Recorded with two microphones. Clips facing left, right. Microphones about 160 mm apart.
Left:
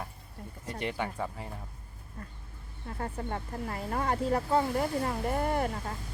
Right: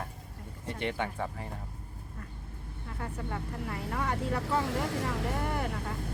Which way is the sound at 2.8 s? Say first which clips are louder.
Left 3 dB; 35° left (ahead or behind).